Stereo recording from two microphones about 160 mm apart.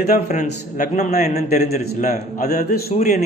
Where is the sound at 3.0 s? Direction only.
45° left (ahead or behind).